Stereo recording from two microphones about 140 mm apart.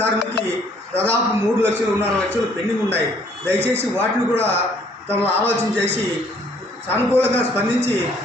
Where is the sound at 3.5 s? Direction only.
15° right (ahead or behind).